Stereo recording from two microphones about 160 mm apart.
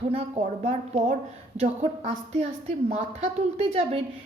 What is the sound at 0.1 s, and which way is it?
A woman's voice, 40° right (ahead or behind).